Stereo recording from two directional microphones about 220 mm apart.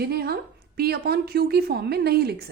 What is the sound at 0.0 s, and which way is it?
A woman's voice, 45° right (ahead or behind).